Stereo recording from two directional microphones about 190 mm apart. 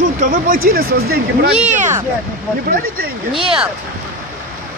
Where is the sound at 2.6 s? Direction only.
50° right (ahead or behind).